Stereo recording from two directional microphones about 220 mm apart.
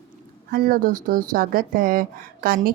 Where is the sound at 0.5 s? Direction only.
40° right (ahead or behind).